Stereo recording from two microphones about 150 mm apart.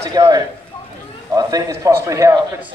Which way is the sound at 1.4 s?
25° right (ahead or behind).